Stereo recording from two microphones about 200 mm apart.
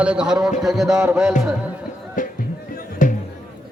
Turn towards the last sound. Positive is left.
turn(degrees=40)  # may be behind; listen again after turning